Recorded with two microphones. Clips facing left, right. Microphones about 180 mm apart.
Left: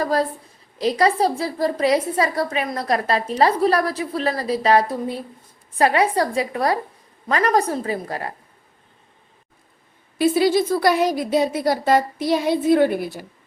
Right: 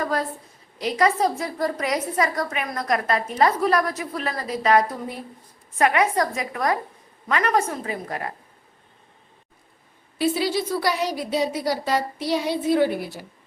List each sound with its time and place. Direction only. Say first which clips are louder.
0.0 s a woman's voice: left 5 dB; 35° left (ahead or behind)
10.2 s a woman's voice: left 6 dB; 50° left (ahead or behind)